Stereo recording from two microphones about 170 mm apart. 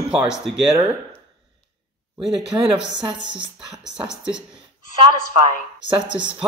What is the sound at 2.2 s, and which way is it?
Speech, 5° right (ahead or behind).